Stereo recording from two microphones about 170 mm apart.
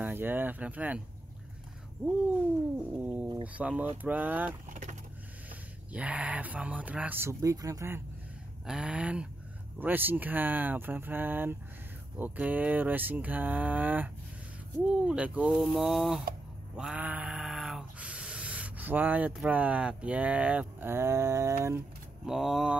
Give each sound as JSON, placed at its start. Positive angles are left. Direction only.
{"t": 0.0, "sound": "speech", "side_deg": -10}
{"t": 3.0, "sound": "speech", "side_deg": -10}
{"t": 4.6, "sound": "vehicle", "side_deg": -50}
{"t": 5.9, "sound": "speech", "side_deg": -10}
{"t": 8.6, "sound": "speech", "side_deg": -5}
{"t": 16.7, "sound": "a sound", "side_deg": -5}
{"t": 22.2, "sound": "speech", "side_deg": -5}